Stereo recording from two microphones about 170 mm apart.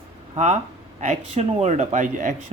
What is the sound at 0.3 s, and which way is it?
Speech, 40° right (ahead or behind).